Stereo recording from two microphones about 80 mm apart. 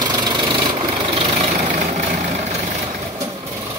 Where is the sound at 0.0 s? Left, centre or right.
Right.